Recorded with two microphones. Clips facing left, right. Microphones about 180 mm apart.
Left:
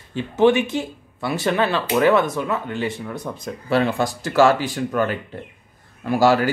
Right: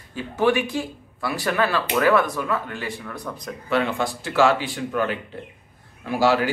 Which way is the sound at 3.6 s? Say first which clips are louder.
Left 3 dB; 35° left (ahead or behind).